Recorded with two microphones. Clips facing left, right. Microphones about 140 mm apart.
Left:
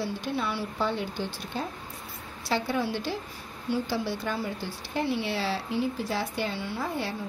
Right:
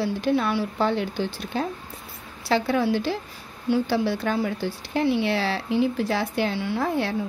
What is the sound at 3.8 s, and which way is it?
Speech, 75° right (ahead or behind).